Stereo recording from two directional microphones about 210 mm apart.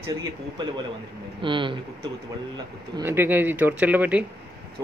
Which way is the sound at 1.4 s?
25° right (ahead or behind).